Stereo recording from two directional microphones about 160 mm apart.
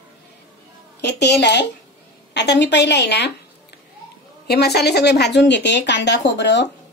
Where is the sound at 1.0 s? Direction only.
90° left.